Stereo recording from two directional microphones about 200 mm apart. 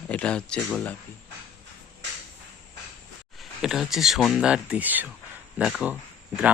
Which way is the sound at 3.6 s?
Centre (ahead or behind).